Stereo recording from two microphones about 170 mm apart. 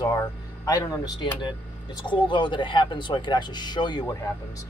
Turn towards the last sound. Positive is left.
turn(degrees=25)  # may be behind; listen again after turning